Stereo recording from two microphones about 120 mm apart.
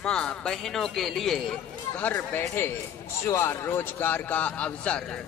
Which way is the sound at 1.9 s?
15° left (ahead or behind).